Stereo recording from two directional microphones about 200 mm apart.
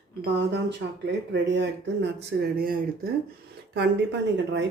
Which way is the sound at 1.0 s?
60° right (ahead or behind).